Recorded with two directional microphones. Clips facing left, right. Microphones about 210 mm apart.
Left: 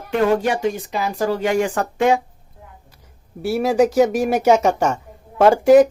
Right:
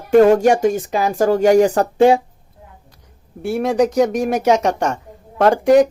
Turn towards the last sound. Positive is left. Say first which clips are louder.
# left 1 dB
turn(degrees=5)  # may be behind; listen again after turning